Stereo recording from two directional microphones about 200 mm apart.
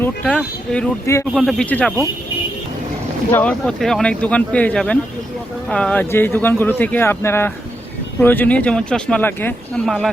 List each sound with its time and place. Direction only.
0.0 s speech: 5° left (ahead or behind)
3.3 s speech: 5° left (ahead or behind)